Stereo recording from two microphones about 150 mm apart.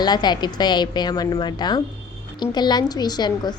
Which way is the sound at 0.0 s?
30° left (ahead or behind).